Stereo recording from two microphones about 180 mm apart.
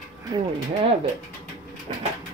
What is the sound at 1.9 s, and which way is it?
Bird, 35° right (ahead or behind).